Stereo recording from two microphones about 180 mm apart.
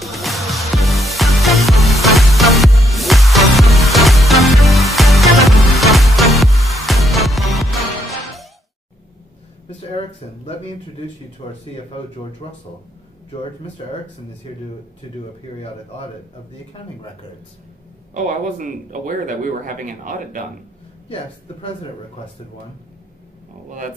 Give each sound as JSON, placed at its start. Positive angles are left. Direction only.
{"t": 0.0, "sound": "music", "side_deg": 0}
{"t": 14.5, "sound": "speech", "side_deg": 30}
{"t": 18.1, "sound": "speech", "side_deg": -45}
{"t": 21.1, "sound": "a man's voice", "side_deg": 30}